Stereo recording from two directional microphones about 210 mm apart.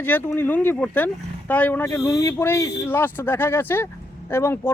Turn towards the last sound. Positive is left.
turn(degrees=10)  # may be behind; listen again after turning